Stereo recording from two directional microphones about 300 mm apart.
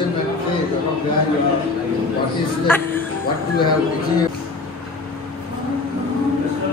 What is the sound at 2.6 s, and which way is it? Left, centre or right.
Speech, centre.